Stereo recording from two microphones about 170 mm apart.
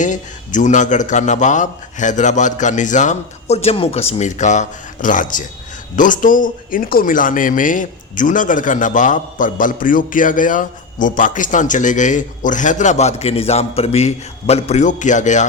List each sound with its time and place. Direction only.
0.0 s a man's voice: 45° left (ahead or behind)